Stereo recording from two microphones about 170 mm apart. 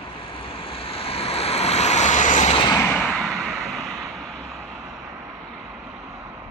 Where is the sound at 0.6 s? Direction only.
35° left (ahead or behind).